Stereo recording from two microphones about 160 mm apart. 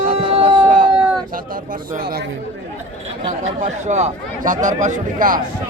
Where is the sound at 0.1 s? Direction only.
35° right (ahead or behind).